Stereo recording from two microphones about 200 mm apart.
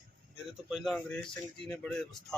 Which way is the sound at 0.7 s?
Centre (ahead or behind).